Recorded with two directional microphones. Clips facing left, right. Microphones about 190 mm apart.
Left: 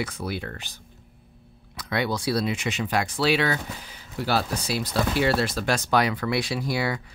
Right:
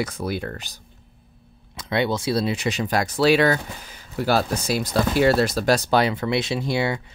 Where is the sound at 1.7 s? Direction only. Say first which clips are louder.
Right 4 dB; 25° right (ahead or behind).